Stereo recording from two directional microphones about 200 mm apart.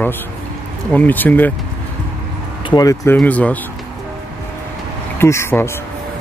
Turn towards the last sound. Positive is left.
turn(degrees=15)  # may be behind; listen again after turning